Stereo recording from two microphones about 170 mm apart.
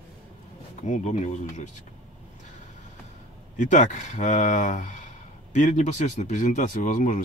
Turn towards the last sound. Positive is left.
turn(degrees=50)  # may be behind; listen again after turning